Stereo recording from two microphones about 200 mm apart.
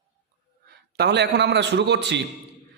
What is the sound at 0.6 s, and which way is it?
A man's voice, 55° right (ahead or behind).